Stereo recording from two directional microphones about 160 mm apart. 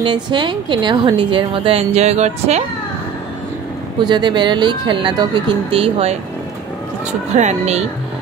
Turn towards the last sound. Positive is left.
turn(degrees=-45)  # may be behind; listen again after turning